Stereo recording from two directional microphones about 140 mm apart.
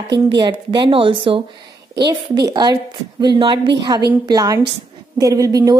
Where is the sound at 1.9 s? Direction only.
25° right (ahead or behind).